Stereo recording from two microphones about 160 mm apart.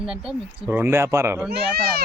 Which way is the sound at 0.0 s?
5° right (ahead or behind).